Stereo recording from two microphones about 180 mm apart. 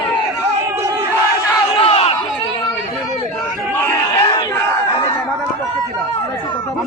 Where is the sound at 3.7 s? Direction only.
15° left (ahead or behind).